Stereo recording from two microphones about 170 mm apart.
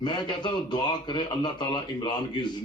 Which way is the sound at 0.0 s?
25° left (ahead or behind).